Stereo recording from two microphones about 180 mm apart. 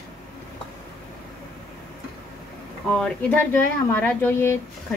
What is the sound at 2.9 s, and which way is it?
Speech, 5° left (ahead or behind).